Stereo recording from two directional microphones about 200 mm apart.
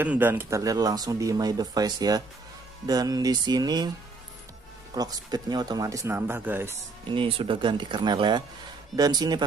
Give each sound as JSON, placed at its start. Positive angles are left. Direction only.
{"t": 0.0, "sound": "speech", "side_deg": -10}
{"t": 4.9, "sound": "speech", "side_deg": -20}
{"t": 7.1, "sound": "speech", "side_deg": -25}